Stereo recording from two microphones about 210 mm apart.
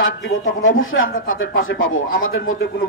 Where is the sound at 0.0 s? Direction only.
70° left (ahead or behind).